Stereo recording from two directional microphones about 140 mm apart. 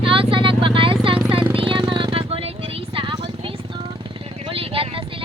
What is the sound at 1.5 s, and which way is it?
Vehicle, 40° right (ahead or behind).